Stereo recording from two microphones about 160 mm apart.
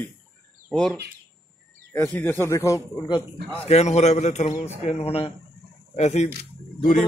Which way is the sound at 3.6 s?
45° left (ahead or behind).